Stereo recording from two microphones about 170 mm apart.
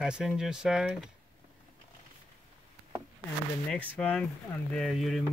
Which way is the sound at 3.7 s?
10° left (ahead or behind).